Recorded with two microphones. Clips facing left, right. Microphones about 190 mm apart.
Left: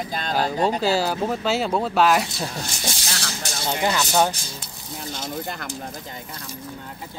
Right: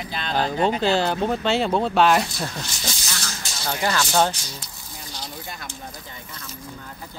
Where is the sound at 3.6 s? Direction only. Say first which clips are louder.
Left 1 dB; 20° left (ahead or behind).